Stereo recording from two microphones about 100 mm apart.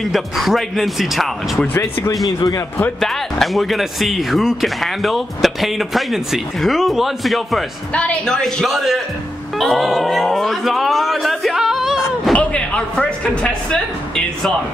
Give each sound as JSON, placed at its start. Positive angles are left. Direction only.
{"t": 0.0, "sound": "speech", "side_deg": 0}
{"t": 2.2, "sound": "speech", "side_deg": 35}
{"t": 3.0, "sound": "speech", "side_deg": 5}
{"t": 7.9, "sound": "speech", "side_deg": 10}
{"t": 12.3, "sound": "speech", "side_deg": 10}